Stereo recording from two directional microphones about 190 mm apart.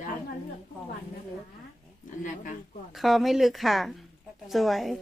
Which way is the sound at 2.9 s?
Centre (ahead or behind).